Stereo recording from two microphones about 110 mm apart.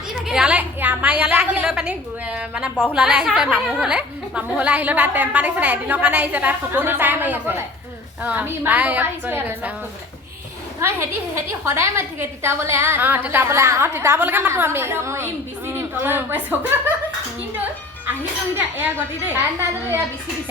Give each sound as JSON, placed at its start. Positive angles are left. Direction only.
{"t": 0.1, "sound": "a woman's voice", "side_deg": -5}
{"t": 11.3, "sound": "a woman's voice", "side_deg": -25}